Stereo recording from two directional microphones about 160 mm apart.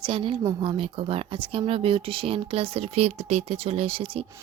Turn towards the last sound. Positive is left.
turn(degrees=-35)  # may be behind; listen again after turning